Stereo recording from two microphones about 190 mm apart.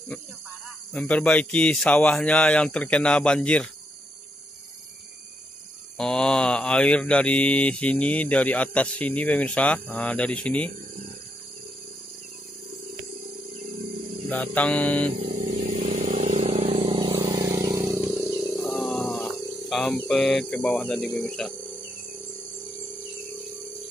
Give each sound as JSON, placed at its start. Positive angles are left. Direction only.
{"t": 0.9, "sound": "speech", "side_deg": 5}
{"t": 5.9, "sound": "mantra", "side_deg": 5}
{"t": 13.6, "sound": "music", "side_deg": -40}
{"t": 14.3, "sound": "mantra", "side_deg": 5}
{"t": 15.2, "sound": "vehicle", "side_deg": -40}
{"t": 17.2, "sound": "vehicle", "side_deg": -15}
{"t": 18.0, "sound": "wild animals", "side_deg": 0}
{"t": 19.7, "sound": "speech", "side_deg": 0}